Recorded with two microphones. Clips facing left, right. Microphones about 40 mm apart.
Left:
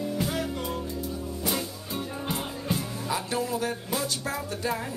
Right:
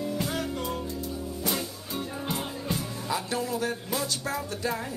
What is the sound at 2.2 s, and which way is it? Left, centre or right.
Music, centre.